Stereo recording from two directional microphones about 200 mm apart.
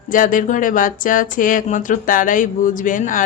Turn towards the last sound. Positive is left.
turn(degrees=40)  # may be behind; listen again after turning